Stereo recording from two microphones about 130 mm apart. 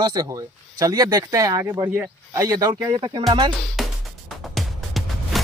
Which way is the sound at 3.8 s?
Centre (ahead or behind).